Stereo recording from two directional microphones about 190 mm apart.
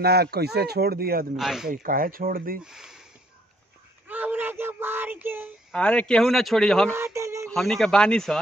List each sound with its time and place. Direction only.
0.0 s speech: 55° right (ahead or behind)
1.3 s speech: centre (ahead or behind)
1.7 s speech: 45° right (ahead or behind)
2.6 s speech: 5° right (ahead or behind)
4.1 s a sound: 10° right (ahead or behind)
5.7 s speech: 5° left (ahead or behind)
6.9 s a sound: 15° right (ahead or behind)
7.4 s speech: centre (ahead or behind)